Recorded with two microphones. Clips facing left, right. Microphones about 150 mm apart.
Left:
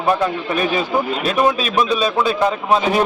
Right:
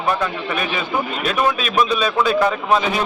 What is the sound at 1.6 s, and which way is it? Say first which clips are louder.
Speech: left 1 dB; 35° left (ahead or behind).